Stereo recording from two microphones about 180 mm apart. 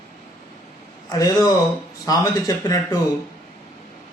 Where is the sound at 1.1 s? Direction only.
20° left (ahead or behind).